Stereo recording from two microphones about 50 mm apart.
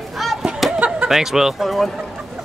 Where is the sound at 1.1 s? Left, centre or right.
Centre.